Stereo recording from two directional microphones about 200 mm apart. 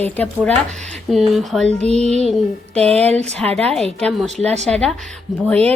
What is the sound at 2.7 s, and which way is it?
A woman's voice, 5° left (ahead or behind).